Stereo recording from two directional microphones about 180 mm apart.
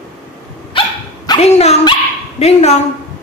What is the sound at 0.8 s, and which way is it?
Dog, 30° left (ahead or behind).